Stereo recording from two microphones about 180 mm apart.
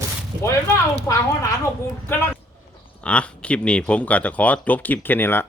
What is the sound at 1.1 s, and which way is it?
Speech, 20° left (ahead or behind).